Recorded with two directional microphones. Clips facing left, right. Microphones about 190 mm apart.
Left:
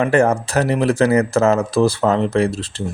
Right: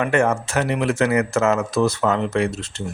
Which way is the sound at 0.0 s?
35° left (ahead or behind).